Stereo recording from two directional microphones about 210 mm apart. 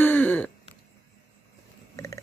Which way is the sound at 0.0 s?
10° left (ahead or behind).